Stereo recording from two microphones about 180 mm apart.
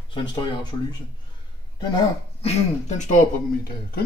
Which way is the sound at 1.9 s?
35° left (ahead or behind).